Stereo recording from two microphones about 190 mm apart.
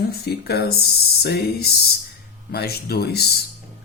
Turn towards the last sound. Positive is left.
turn(degrees=55)  # may be behind; listen again after turning